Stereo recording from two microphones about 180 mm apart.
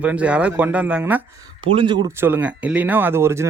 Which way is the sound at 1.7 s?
25° right (ahead or behind).